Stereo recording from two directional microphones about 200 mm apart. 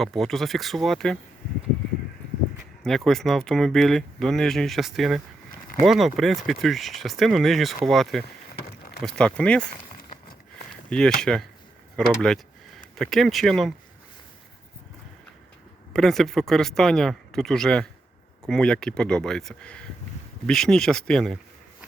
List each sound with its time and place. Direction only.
0.0 s speech: centre (ahead or behind)
2.8 s speech: centre (ahead or behind)
8.6 s a sound: 50° left (ahead or behind)
9.0 s speech: 5° left (ahead or behind)
10.8 s speech: 5° left (ahead or behind)
15.9 s speech: centre (ahead or behind)